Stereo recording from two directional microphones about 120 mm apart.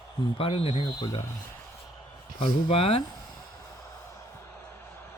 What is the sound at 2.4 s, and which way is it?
Speech, 50° left (ahead or behind).